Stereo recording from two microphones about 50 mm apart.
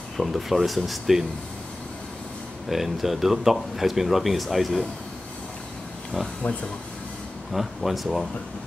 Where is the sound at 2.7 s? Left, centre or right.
Centre.